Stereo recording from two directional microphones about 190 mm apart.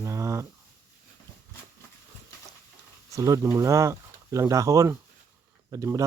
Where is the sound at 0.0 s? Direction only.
15° right (ahead or behind).